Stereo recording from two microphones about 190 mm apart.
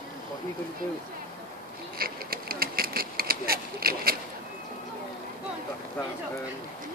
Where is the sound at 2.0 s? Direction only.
50° right (ahead or behind).